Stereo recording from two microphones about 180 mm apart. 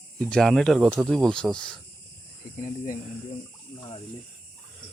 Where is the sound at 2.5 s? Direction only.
45° left (ahead or behind).